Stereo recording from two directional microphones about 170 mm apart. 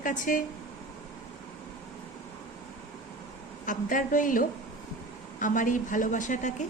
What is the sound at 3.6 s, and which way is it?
A woman's voice, 50° left (ahead or behind).